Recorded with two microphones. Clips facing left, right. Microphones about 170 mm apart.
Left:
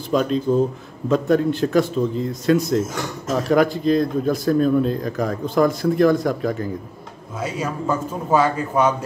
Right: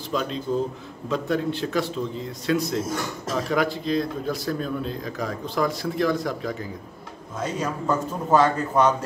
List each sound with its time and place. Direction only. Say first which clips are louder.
0.1 s a man's voice: left 7 dB; 50° left (ahead or behind)
7.3 s a man's voice: left 2 dB; 10° left (ahead or behind)